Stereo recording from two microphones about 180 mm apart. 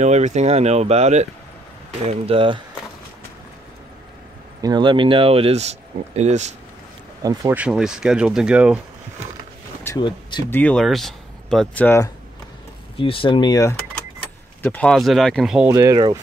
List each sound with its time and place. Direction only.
0.0 s speech: 40° right (ahead or behind)
4.6 s speech: 20° right (ahead or behind); by 6.5 s 40° right (ahead or behind)
7.2 s speech: 10° right (ahead or behind)
9.8 s speech: 25° left (ahead or behind)
10.5 s speech: 5° left (ahead or behind)
12.9 s speech: 30° left (ahead or behind)
14.6 s speech: 5° left (ahead or behind)
15.7 s speech: 20° right (ahead or behind)